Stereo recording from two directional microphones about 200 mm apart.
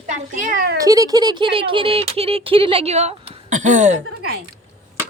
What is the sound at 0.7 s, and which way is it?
Speech, 15° right (ahead or behind).